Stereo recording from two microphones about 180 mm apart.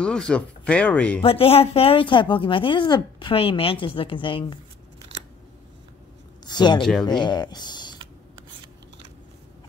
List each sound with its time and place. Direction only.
0.0 s speech: 5° left (ahead or behind)
1.2 s a woman's voice: 30° left (ahead or behind)
6.4 s a woman's voice: 25° left (ahead or behind)